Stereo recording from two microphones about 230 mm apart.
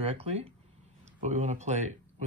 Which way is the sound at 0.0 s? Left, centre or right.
Right.